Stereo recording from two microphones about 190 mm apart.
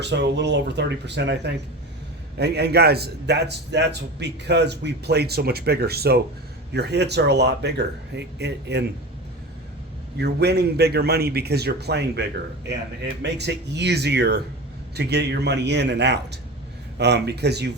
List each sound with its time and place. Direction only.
0.0 s a man's voice: 65° right (ahead or behind)
10.2 s a man's voice: 60° right (ahead or behind)
13.2 s a man's voice: 65° right (ahead or behind)